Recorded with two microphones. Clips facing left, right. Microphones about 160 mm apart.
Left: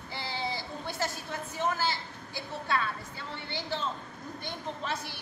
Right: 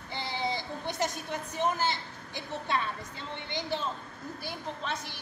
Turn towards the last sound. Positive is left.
turn(degrees=0)  # may be behind; listen again after turning